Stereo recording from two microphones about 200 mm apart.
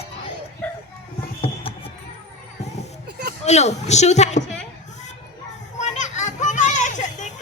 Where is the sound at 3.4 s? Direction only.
35° left (ahead or behind).